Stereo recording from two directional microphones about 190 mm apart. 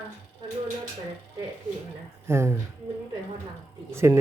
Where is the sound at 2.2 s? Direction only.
15° right (ahead or behind).